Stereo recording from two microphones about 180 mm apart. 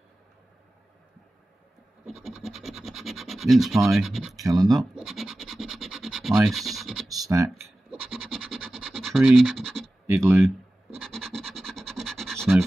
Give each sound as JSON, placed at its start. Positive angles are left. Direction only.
{"t": 2.0, "sound": "speech", "side_deg": 0}
{"t": 4.4, "sound": "speech", "side_deg": -20}
{"t": 4.9, "sound": "scratch", "side_deg": 0}
{"t": 7.1, "sound": "scratch", "side_deg": -20}
{"t": 8.1, "sound": "scratch", "side_deg": 0}
{"t": 10.0, "sound": "speech", "side_deg": -15}
{"t": 11.1, "sound": "scratch", "side_deg": 0}